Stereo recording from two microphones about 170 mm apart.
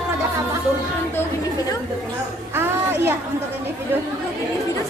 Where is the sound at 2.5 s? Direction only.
15° right (ahead or behind).